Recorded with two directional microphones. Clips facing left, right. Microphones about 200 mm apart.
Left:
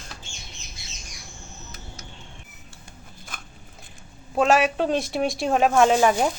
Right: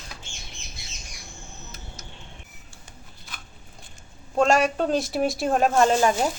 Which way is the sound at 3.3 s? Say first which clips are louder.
Left 3 dB; 50° left (ahead or behind).